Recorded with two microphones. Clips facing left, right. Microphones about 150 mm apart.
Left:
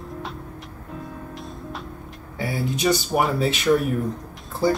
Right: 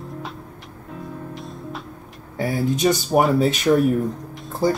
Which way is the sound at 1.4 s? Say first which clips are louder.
Right 2 dB; centre (ahead or behind).